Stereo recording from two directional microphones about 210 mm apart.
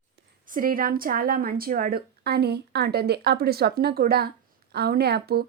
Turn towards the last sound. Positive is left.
turn(degrees=-50)  # may be behind; listen again after turning